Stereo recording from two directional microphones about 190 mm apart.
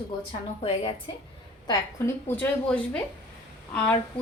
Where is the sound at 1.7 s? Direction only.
10° left (ahead or behind).